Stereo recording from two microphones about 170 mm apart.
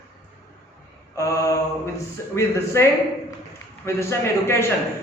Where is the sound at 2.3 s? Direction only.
15° left (ahead or behind).